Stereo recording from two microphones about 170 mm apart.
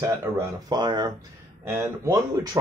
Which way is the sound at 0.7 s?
25° right (ahead or behind).